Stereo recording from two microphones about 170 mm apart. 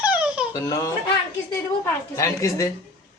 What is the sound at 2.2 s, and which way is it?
Speech, 20° left (ahead or behind).